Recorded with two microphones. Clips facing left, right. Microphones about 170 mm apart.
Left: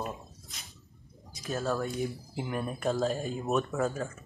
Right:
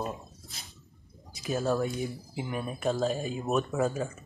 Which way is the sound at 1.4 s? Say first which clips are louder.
Right 3 dB; 10° right (ahead or behind).